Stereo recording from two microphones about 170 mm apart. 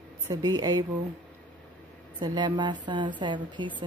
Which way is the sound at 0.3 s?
20° right (ahead or behind).